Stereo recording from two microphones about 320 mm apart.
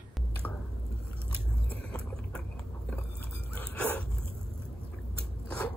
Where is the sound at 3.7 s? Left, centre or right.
Centre.